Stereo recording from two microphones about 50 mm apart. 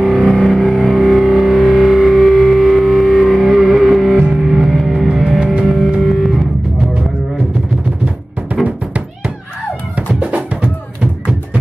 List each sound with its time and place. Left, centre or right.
0.0 s music: centre
8.6 s music: right